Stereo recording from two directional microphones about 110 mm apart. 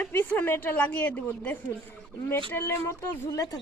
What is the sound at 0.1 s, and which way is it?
A woman's voice, 20° left (ahead or behind).